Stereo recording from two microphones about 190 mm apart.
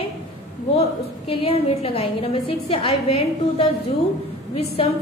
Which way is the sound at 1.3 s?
30° left (ahead or behind).